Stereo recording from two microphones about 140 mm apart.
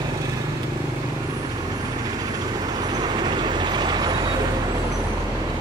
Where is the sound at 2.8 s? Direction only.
30° right (ahead or behind).